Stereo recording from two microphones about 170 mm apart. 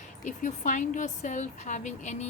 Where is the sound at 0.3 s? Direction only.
45° left (ahead or behind).